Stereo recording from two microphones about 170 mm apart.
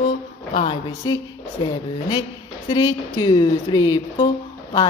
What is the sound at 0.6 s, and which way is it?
Speech, 30° left (ahead or behind).